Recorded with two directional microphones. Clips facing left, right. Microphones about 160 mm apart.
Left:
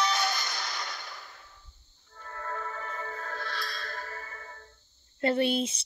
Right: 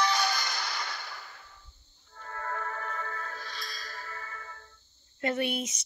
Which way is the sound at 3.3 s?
65° left (ahead or behind).